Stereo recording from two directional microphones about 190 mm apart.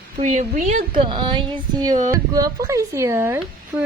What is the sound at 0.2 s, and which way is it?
A woman's voice, 40° right (ahead or behind).